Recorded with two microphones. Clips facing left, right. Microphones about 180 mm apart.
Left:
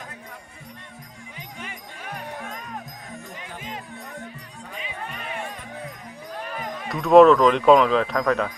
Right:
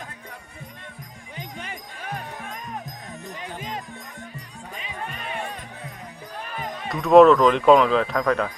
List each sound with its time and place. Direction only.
1.4 s music: 35° right (ahead or behind)
6.8 s speech: centre (ahead or behind)